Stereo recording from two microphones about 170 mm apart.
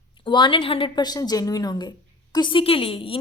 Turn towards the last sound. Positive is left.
turn(degrees=35)  # may be behind; listen again after turning